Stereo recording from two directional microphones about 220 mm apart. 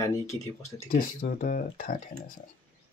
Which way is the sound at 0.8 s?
40° left (ahead or behind).